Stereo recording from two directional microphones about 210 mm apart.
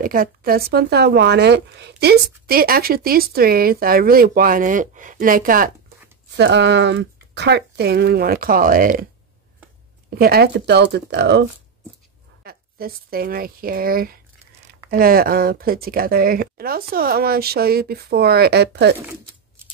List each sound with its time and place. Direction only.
0.0 s speech: 40° right (ahead or behind)
6.3 s speech: 55° right (ahead or behind)
10.0 s speech: 45° right (ahead or behind)
12.4 s speech: 45° right (ahead or behind)